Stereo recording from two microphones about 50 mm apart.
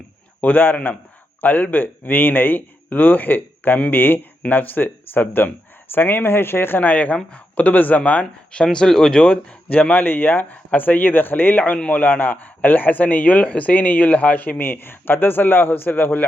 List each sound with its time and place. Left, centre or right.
0.4 s speech: left
8.6 s speech: centre
9.9 s speech: left